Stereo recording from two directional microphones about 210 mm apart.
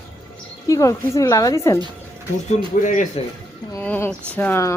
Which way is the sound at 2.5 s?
35° left (ahead or behind).